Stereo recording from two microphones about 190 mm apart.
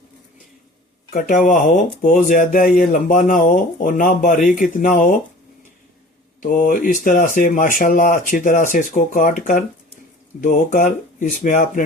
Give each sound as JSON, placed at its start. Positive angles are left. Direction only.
{"t": 1.1, "sound": "speech", "side_deg": 45}
{"t": 6.4, "sound": "speech", "side_deg": 45}